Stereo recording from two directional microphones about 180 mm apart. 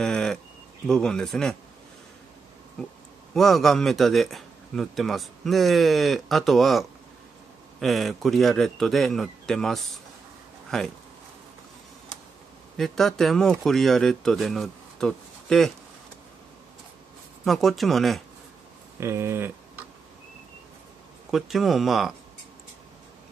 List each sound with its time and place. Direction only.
0.0 s a sound: 5° left (ahead or behind)
0.8 s speech: 5° left (ahead or behind)
3.3 s speech: centre (ahead or behind)
12.7 s speech: centre (ahead or behind)
17.5 s speech: centre (ahead or behind)
18.9 s speech: 15° right (ahead or behind)
21.3 s speech: centre (ahead or behind)